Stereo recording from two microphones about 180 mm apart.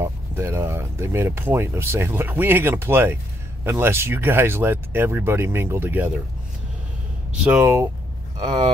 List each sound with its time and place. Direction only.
0.0 s speech: 15° right (ahead or behind)
7.4 s speech: 10° right (ahead or behind)